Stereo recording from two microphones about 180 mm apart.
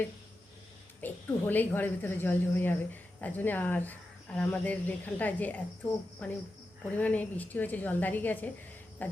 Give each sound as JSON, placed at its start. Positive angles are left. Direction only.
{"t": 1.0, "sound": "a woman's voice", "side_deg": 10}